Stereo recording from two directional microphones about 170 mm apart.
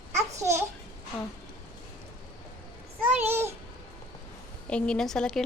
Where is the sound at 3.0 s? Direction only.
10° right (ahead or behind).